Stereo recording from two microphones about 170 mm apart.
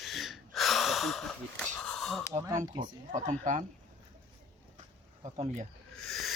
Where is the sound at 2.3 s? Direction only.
20° right (ahead or behind).